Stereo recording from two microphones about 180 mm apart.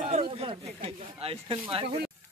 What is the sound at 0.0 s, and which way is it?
Speech, 35° right (ahead or behind).